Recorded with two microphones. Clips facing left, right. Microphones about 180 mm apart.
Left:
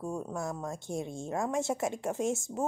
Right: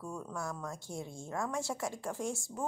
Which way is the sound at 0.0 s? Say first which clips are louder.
Left 5 dB; 25° left (ahead or behind).